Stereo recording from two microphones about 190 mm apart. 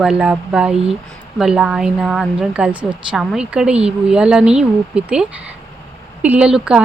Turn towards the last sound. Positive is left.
turn(degrees=-5)  # may be behind; listen again after turning